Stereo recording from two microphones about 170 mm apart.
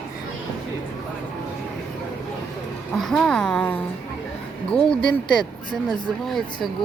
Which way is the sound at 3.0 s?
Centre (ahead or behind).